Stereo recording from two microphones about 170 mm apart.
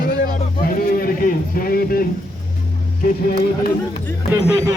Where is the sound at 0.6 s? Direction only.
60° left (ahead or behind).